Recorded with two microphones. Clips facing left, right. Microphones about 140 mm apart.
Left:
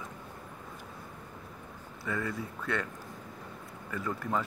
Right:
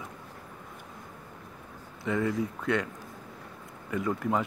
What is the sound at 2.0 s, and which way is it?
Speech, 15° right (ahead or behind).